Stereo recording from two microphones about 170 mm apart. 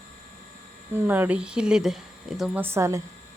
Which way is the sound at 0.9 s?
10° right (ahead or behind).